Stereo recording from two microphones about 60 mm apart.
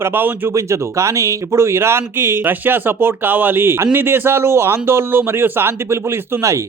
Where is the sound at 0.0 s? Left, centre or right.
Right.